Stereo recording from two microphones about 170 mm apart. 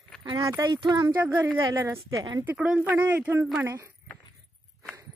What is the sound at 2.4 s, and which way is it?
Speech, 5° right (ahead or behind).